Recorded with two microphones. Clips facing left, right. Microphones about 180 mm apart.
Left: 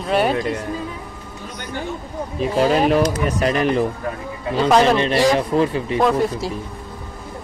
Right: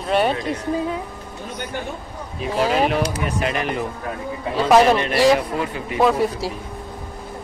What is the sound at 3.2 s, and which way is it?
Speech, 40° left (ahead or behind).